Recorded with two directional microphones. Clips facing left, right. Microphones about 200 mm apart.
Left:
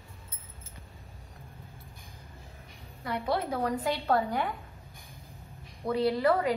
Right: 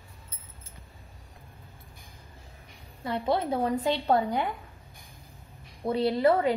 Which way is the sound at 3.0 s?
25° right (ahead or behind).